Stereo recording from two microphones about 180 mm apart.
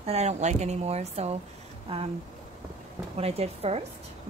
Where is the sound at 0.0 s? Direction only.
35° right (ahead or behind).